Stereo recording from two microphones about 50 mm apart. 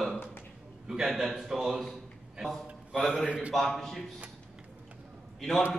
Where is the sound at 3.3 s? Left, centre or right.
Right.